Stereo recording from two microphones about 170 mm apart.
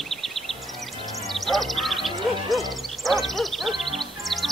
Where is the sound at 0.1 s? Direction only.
Centre (ahead or behind).